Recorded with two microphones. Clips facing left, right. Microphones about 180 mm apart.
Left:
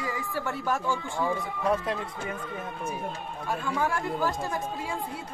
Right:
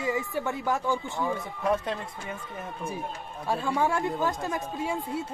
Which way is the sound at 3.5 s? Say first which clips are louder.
Right 3 dB; 30° right (ahead or behind).